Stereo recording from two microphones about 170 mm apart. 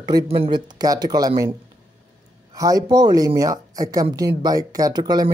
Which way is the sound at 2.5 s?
20° right (ahead or behind).